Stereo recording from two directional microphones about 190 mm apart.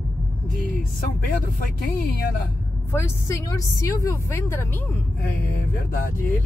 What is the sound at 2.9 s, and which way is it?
A woman's voice, 15° left (ahead or behind).